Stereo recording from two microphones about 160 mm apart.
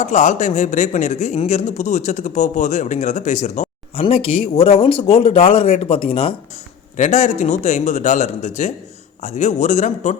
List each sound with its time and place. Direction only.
0.0 s speech: 45° left (ahead or behind)
4.0 s speech: 35° left (ahead or behind)
6.9 s speech: 50° left (ahead or behind)